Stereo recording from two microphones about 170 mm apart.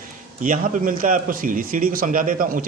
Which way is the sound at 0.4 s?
50° right (ahead or behind).